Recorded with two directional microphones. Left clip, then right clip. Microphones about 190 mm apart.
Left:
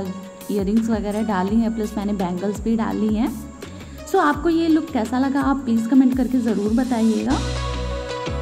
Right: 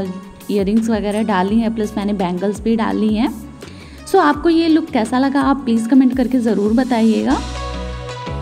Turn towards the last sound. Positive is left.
turn(degrees=-35)  # may be behind; listen again after turning